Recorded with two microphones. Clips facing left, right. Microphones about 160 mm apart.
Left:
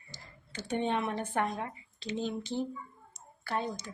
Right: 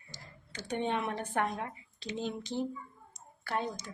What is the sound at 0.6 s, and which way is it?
Speech, 15° right (ahead or behind).